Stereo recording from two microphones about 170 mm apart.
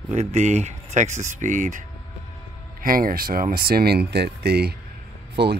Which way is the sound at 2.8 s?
55° right (ahead or behind).